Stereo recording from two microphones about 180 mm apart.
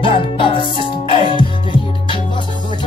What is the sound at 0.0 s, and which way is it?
Music, 30° left (ahead or behind).